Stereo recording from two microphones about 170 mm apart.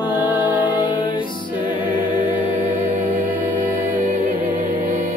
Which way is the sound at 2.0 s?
55° right (ahead or behind).